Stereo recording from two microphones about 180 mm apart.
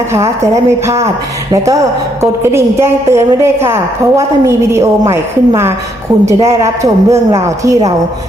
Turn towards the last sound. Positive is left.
turn(degrees=-20)  # may be behind; listen again after turning